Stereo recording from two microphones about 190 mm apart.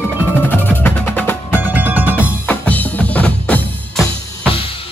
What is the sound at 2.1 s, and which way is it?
Drum, 10° left (ahead or behind).